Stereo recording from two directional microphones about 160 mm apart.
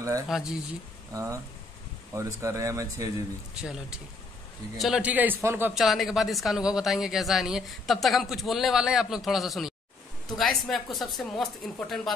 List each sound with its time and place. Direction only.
0.3 s speech: 5° right (ahead or behind)
1.1 s speech: 20° right (ahead or behind)
4.7 s a man's voice: 5° right (ahead or behind)
5.8 s speech: centre (ahead or behind)